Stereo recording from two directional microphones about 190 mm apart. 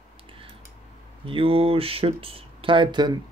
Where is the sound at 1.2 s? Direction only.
30° right (ahead or behind).